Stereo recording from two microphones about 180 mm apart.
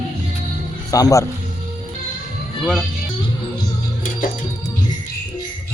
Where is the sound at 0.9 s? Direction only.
20° left (ahead or behind).